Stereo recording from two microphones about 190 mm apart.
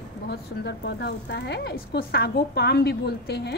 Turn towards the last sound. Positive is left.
turn(degrees=60)  # may be behind; listen again after turning